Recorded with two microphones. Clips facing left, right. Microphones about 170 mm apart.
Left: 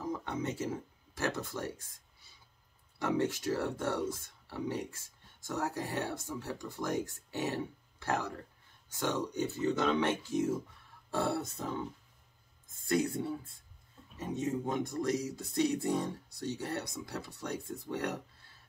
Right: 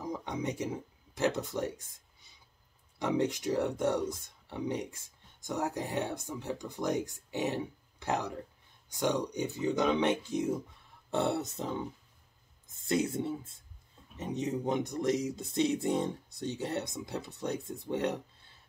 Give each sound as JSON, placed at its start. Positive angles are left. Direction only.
{"t": 0.0, "sound": "speech", "side_deg": -15}
{"t": 11.1, "sound": "music", "side_deg": -20}
{"t": 12.8, "sound": "music", "side_deg": -20}